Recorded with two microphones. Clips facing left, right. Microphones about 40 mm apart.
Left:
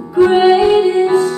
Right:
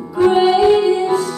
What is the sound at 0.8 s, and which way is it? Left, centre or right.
Music, left.